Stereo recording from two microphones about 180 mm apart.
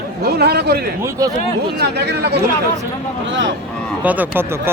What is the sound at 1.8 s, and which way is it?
Speech, 65° right (ahead or behind).